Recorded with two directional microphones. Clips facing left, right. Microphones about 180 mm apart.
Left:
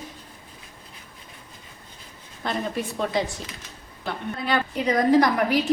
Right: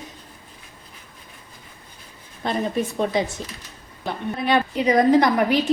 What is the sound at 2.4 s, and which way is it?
Speech, 20° right (ahead or behind).